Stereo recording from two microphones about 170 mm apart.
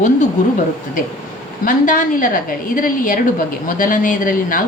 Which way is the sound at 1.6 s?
50° left (ahead or behind).